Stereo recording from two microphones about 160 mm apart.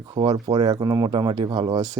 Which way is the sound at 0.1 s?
35° right (ahead or behind).